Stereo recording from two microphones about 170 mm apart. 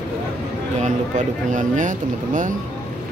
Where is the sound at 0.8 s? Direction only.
45° right (ahead or behind).